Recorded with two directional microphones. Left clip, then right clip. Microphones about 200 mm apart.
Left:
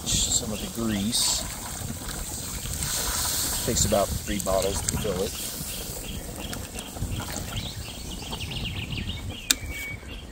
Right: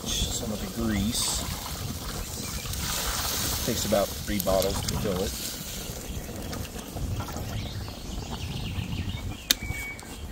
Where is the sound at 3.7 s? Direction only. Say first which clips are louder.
Left 2 dB; centre (ahead or behind).